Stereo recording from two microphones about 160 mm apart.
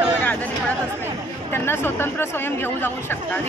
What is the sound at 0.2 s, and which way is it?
Chatter, 10° left (ahead or behind).